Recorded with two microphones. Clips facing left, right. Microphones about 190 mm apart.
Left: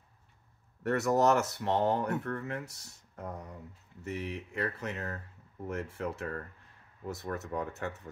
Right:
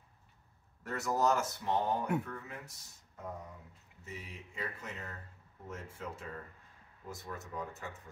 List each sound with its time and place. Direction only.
0.8 s speech: 70° left (ahead or behind)